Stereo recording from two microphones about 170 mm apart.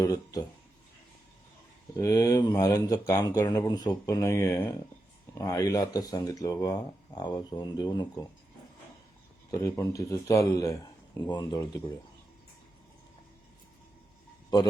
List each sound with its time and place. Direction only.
0.0 s speech: 20° left (ahead or behind)
2.0 s speech: 20° left (ahead or behind)
9.5 s speech: 20° left (ahead or behind)